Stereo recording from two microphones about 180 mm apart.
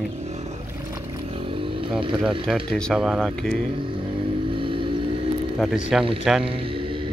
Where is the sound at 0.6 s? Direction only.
15° right (ahead or behind).